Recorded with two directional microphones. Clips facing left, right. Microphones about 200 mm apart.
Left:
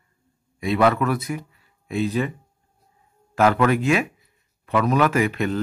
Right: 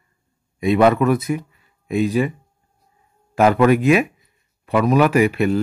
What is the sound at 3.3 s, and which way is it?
Speech, 15° right (ahead or behind).